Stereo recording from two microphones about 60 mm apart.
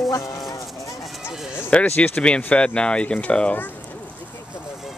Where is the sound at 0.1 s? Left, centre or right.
Left.